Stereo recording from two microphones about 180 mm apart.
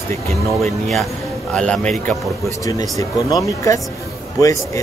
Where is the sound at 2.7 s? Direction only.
20° left (ahead or behind).